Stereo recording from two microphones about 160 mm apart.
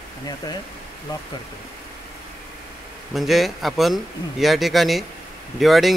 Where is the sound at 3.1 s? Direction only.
Centre (ahead or behind).